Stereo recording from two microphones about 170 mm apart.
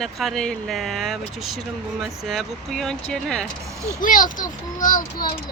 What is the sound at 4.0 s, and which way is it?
A child's voice, 55° left (ahead or behind).